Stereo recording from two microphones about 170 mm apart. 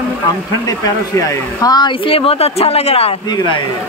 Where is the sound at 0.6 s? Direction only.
20° left (ahead or behind).